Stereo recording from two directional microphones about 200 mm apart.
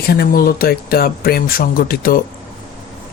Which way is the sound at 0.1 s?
50° left (ahead or behind).